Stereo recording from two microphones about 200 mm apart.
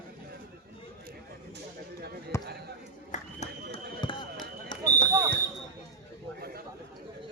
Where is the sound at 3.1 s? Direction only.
35° left (ahead or behind).